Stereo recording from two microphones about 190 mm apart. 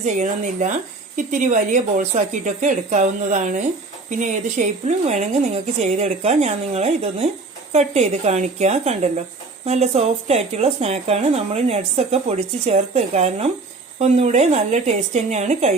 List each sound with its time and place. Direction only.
0.0 s speech: 40° right (ahead or behind)